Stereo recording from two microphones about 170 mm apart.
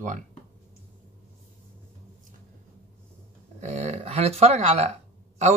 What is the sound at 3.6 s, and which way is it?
Speech, 40° right (ahead or behind).